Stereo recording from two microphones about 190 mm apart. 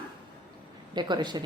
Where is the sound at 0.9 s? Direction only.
25° right (ahead or behind).